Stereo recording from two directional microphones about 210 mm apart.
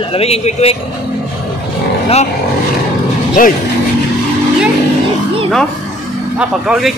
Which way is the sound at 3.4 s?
40° left (ahead or behind).